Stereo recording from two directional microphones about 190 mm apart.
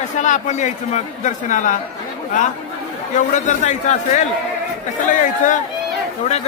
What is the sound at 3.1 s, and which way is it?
Speech, 40° left (ahead or behind).